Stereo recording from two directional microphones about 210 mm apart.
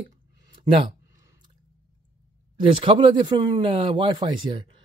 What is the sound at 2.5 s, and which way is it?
Speech, 25° right (ahead or behind).